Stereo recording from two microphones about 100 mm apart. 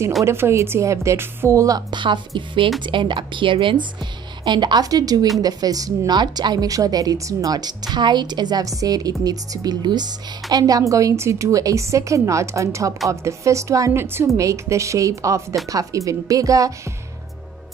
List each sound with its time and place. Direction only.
0.2 s a woman's voice: 25° right (ahead or behind)
1.9 s a woman's voice: 50° right (ahead or behind); by 16.7 s 35° right (ahead or behind)